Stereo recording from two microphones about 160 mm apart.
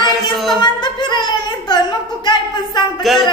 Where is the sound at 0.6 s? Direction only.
30° left (ahead or behind).